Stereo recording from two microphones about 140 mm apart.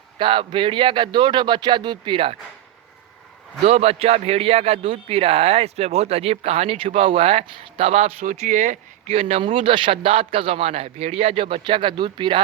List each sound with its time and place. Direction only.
0.2 s speech: 35° right (ahead or behind)
3.7 s speech: 50° right (ahead or behind)
8.2 s speech: 65° right (ahead or behind)
9.3 s speech: 40° right (ahead or behind)